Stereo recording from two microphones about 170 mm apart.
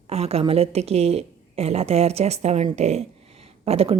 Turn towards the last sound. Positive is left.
turn(degrees=-35)  # may be behind; listen again after turning